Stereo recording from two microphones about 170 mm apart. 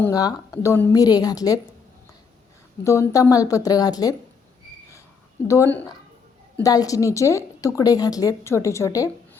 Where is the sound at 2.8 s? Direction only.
20° left (ahead or behind).